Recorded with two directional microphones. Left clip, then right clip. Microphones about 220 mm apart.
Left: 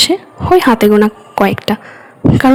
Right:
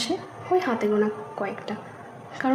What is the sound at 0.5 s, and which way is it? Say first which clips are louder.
Speech: left 14 dB; 45° left (ahead or behind).